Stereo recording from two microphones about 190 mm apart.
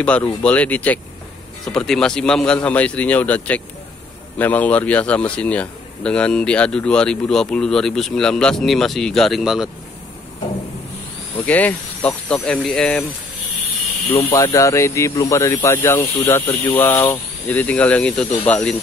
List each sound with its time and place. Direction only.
0.0 s a man's voice: 5° left (ahead or behind)
11.3 s speech: 10° left (ahead or behind)
14.1 s speech: 15° left (ahead or behind)